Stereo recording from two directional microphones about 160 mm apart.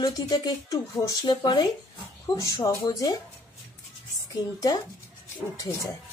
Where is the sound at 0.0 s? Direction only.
25° left (ahead or behind).